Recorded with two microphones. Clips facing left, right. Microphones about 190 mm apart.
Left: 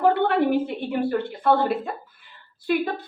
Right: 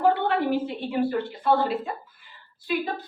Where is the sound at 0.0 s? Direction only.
55° left (ahead or behind).